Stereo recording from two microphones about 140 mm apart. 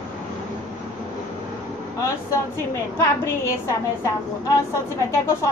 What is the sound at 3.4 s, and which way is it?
A woman's voice, 20° left (ahead or behind).